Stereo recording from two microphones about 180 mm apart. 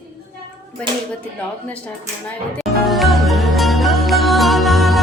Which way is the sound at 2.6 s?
Centre (ahead or behind).